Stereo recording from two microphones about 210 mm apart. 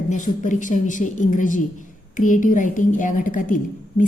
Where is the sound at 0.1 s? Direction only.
35° left (ahead or behind).